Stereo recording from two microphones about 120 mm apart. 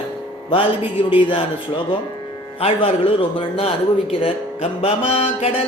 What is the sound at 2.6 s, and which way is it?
Speech, 50° left (ahead or behind).